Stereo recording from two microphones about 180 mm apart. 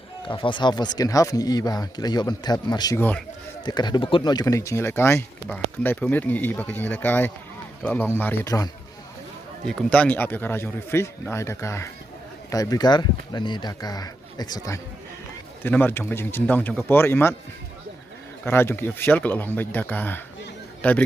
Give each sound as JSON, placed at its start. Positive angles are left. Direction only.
{"t": 0.3, "sound": "speech", "side_deg": 25}
{"t": 3.6, "sound": "speech", "side_deg": 25}
{"t": 9.6, "sound": "speech", "side_deg": 5}
{"t": 18.4, "sound": "speech", "side_deg": 10}